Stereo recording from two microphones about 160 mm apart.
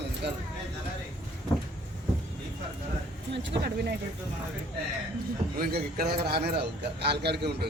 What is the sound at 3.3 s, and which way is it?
Speech, 90° right.